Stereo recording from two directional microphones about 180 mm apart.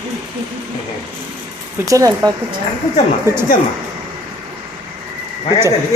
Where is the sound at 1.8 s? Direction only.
20° right (ahead or behind).